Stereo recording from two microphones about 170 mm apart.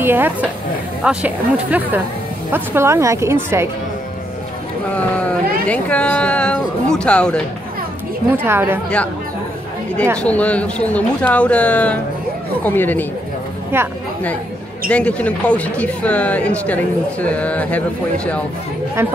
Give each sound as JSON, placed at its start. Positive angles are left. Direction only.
{"t": 0.0, "sound": "speech", "side_deg": -10}
{"t": 4.9, "sound": "speech", "side_deg": 10}
{"t": 8.3, "sound": "speech", "side_deg": -10}
{"t": 10.1, "sound": "speech", "side_deg": 5}
{"t": 13.7, "sound": "speech", "side_deg": -15}
{"t": 14.9, "sound": "speech", "side_deg": 5}